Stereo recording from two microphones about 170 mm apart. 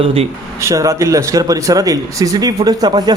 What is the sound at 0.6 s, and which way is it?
A man's voice, 20° right (ahead or behind).